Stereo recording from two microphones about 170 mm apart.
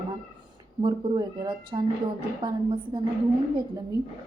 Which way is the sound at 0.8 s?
25° right (ahead or behind).